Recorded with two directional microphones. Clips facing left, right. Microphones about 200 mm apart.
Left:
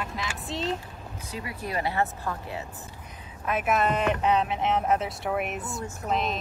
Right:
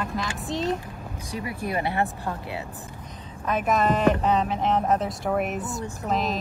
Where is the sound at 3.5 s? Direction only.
5° left (ahead or behind).